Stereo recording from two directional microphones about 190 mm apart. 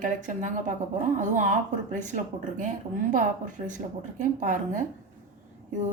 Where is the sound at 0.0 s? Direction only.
40° right (ahead or behind).